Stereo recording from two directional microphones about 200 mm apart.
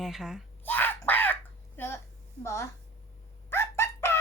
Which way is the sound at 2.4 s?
15° left (ahead or behind).